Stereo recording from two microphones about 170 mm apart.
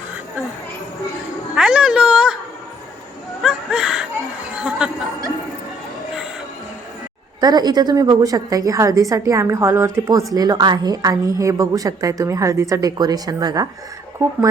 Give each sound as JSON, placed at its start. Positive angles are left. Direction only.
{"t": 1.5, "sound": "a woman's voice", "side_deg": -5}
{"t": 3.4, "sound": "a sound", "side_deg": -5}
{"t": 7.4, "sound": "a woman's voice", "side_deg": -25}